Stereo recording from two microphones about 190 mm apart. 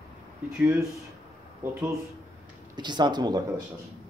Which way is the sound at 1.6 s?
15° right (ahead or behind).